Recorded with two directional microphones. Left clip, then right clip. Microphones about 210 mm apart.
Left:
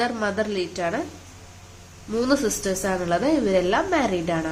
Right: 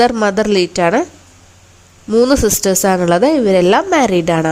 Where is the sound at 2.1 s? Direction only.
45° right (ahead or behind).